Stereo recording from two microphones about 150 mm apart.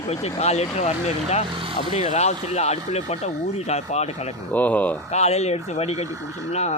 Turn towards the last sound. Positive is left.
turn(degrees=45)  # may be behind; listen again after turning